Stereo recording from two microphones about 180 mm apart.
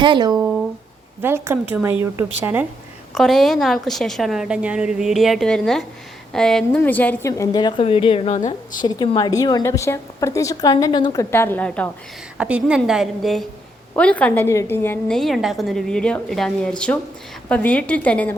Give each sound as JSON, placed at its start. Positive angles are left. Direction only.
{"t": 0.0, "sound": "speech", "side_deg": -25}
{"t": 0.3, "sound": "a woman's voice", "side_deg": -5}
{"t": 3.2, "sound": "a woman's voice", "side_deg": 0}
{"t": 8.8, "sound": "a woman's voice", "side_deg": 25}
{"t": 12.4, "sound": "a woman's voice", "side_deg": -5}